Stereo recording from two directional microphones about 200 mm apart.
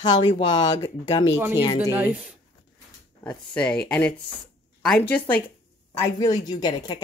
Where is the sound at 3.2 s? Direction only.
5° left (ahead or behind).